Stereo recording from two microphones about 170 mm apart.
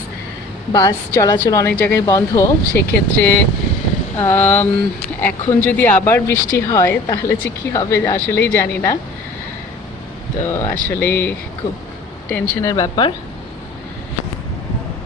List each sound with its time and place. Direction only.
0.7 s a woman's voice: 20° left (ahead or behind)
10.4 s a woman's voice: 15° left (ahead or behind)